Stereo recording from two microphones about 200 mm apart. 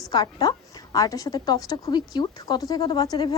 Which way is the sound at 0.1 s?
20° left (ahead or behind).